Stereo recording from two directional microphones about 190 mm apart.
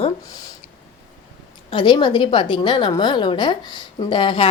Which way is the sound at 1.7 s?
25° left (ahead or behind).